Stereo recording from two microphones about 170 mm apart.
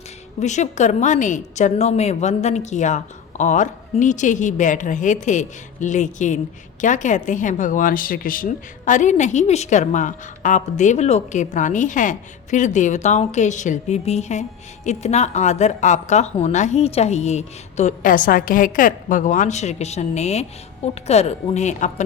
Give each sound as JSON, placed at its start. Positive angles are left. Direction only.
{"t": 0.3, "sound": "speech", "side_deg": 45}